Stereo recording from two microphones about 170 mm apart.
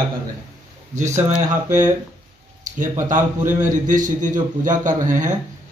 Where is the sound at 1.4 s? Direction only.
45° right (ahead or behind).